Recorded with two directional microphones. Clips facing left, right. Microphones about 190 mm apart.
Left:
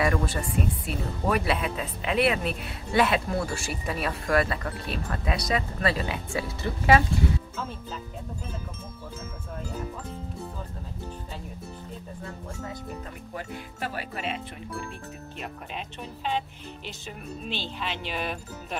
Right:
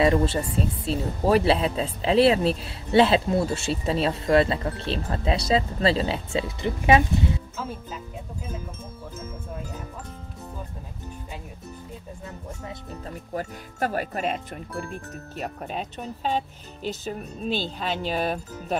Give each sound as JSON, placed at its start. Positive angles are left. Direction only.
{"t": 0.0, "sound": "music", "side_deg": -25}
{"t": 0.6, "sound": "speech", "side_deg": -30}
{"t": 13.3, "sound": "speech", "side_deg": -40}